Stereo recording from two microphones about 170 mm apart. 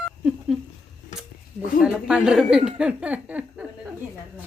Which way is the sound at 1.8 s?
5° right (ahead or behind).